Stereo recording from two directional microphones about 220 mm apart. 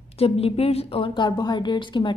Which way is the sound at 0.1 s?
25° left (ahead or behind).